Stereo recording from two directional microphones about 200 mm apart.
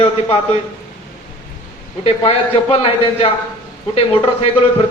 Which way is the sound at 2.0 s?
30° left (ahead or behind).